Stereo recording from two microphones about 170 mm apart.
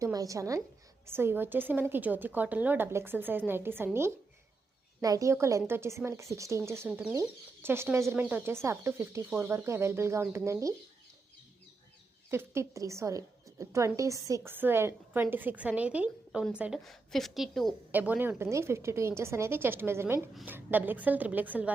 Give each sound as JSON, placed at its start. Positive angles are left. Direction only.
{"t": 0.0, "sound": "a woman's voice", "side_deg": -20}
{"t": 5.0, "sound": "a woman's voice", "side_deg": -20}
{"t": 12.3, "sound": "a woman's voice", "side_deg": -15}
{"t": 17.9, "sound": "a woman's voice", "side_deg": -10}